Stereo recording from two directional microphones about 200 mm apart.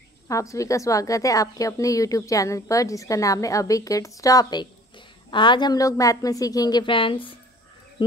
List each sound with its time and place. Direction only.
0.3 s a woman's voice: 15° left (ahead or behind)